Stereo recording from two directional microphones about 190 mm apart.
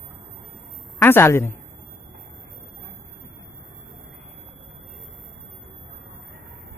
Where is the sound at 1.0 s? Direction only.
10° left (ahead or behind).